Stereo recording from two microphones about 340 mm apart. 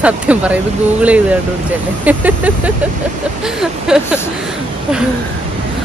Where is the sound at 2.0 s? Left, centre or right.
Centre.